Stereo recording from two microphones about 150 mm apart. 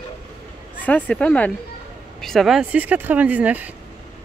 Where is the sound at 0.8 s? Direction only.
10° left (ahead or behind); by 3.7 s 10° right (ahead or behind).